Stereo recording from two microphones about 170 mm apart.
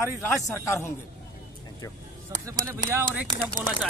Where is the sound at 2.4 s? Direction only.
15° right (ahead or behind).